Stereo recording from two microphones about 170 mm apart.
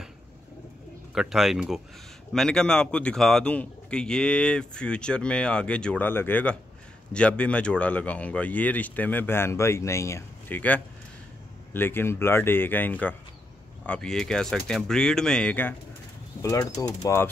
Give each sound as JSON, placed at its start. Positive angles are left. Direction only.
{"t": 1.1, "sound": "a man's voice", "side_deg": 0}
{"t": 16.3, "sound": "speech", "side_deg": 20}